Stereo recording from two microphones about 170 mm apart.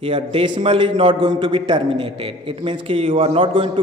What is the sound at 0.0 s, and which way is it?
A man's voice, 30° right (ahead or behind).